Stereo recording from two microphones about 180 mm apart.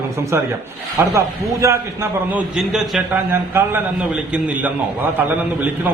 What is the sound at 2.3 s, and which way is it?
A man's voice, 5° right (ahead or behind).